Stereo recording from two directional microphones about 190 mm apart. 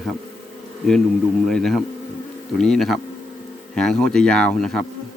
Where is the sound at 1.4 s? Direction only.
Centre (ahead or behind).